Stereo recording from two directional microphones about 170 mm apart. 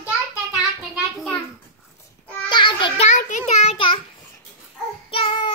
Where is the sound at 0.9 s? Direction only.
5° left (ahead or behind).